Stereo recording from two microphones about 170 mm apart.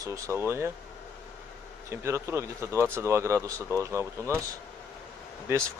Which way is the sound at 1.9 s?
15° right (ahead or behind).